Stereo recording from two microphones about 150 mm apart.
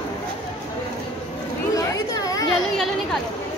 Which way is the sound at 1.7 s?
20° left (ahead or behind).